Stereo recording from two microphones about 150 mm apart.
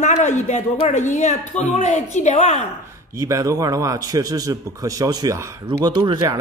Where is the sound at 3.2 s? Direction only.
20° right (ahead or behind).